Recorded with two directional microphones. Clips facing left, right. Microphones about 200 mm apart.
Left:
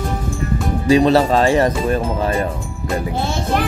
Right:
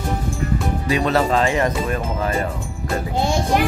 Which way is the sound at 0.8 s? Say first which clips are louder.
Left 7 dB; 30° left (ahead or behind).